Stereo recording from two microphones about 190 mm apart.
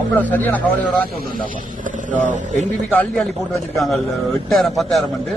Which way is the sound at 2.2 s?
40° right (ahead or behind).